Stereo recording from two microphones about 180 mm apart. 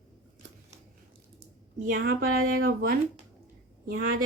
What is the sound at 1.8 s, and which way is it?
Speech, 55° right (ahead or behind).